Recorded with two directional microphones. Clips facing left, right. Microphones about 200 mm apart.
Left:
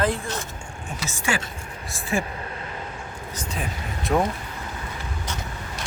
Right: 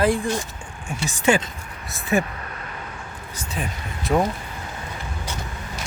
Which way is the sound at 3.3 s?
5° right (ahead or behind).